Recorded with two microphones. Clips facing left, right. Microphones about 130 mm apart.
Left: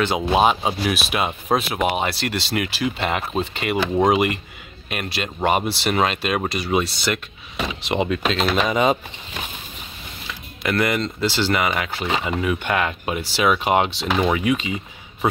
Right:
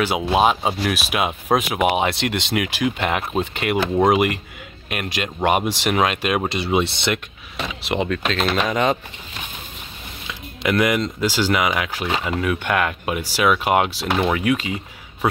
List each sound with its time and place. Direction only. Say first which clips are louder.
0.0 s speech: even; 5° right (ahead or behind)
6.5 s speech: right 1 dB; 25° right (ahead or behind)
7.5 s speech: left 1 dB; 5° left (ahead or behind)
10.2 s speech: right 3 dB; 10° right (ahead or behind)